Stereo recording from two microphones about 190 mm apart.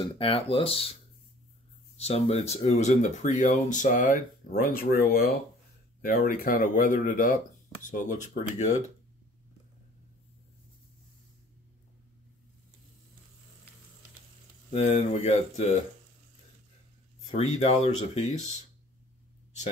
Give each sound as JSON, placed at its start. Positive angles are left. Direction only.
{"t": 0.2, "sound": "speech", "side_deg": 30}
{"t": 2.0, "sound": "speech", "side_deg": 35}
{"t": 14.7, "sound": "speech", "side_deg": 35}
{"t": 17.3, "sound": "speech", "side_deg": 35}